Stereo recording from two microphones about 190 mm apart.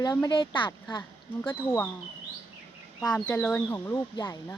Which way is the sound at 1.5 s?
10° left (ahead or behind).